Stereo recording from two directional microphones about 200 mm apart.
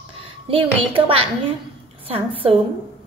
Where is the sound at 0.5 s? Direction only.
25° right (ahead or behind).